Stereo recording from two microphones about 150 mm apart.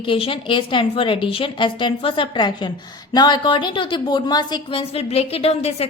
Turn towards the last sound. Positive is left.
turn(degrees=40)  # may be behind; listen again after turning